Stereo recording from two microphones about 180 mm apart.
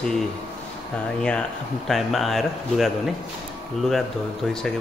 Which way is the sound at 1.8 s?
Centre (ahead or behind).